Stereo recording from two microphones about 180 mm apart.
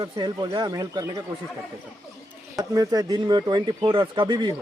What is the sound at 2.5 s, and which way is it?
Speech, 20° right (ahead or behind).